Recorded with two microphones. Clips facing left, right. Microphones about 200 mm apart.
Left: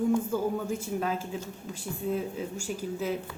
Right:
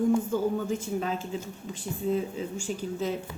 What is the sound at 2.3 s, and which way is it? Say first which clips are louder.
Speech: right 1 dB; 10° left (ahead or behind).